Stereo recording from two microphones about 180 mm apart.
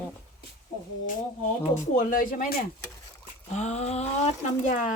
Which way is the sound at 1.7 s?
50° left (ahead or behind).